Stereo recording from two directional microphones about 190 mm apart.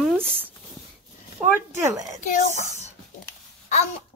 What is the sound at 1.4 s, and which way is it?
Speech, 10° right (ahead or behind).